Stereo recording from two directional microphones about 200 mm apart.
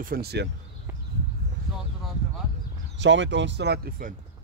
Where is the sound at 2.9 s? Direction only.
65° right (ahead or behind); by 4.1 s 45° right (ahead or behind).